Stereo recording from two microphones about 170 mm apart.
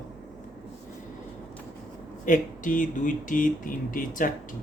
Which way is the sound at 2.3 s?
50° left (ahead or behind).